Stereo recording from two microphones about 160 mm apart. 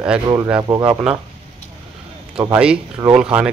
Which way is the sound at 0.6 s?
20° right (ahead or behind).